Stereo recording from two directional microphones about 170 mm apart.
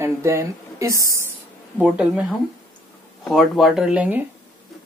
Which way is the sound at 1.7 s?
5° right (ahead or behind).